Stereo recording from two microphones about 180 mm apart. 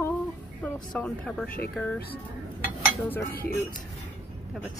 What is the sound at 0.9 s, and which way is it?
Speech, 5° left (ahead or behind).